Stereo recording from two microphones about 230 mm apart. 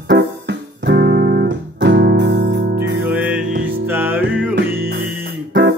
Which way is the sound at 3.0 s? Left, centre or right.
Centre.